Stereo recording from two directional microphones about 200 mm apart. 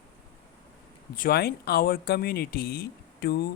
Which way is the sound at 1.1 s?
45° left (ahead or behind).